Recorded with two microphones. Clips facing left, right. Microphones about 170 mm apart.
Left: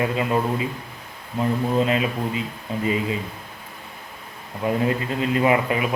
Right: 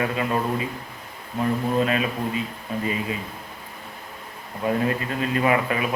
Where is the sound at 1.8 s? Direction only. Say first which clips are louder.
Left 1 dB; 25° left (ahead or behind).